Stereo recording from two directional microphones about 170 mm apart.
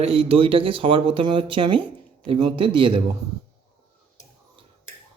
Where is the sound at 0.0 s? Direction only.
35° right (ahead or behind).